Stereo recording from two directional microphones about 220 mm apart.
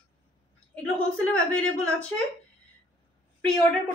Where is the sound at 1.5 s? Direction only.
5° left (ahead or behind).